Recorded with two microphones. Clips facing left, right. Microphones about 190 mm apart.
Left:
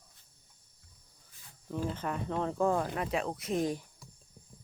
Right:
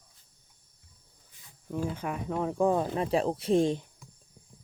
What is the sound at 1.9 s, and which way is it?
Speech, 10° right (ahead or behind).